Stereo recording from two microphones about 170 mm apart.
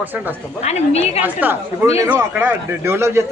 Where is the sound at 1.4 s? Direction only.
10° right (ahead or behind).